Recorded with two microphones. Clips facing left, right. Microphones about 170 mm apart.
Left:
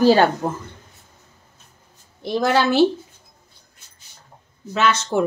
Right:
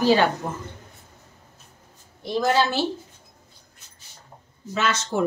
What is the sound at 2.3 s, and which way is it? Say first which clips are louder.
Speech: left 4 dB; 70° left (ahead or behind).